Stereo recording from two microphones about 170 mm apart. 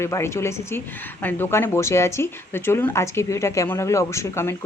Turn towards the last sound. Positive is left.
turn(degrees=15)  # may be behind; listen again after turning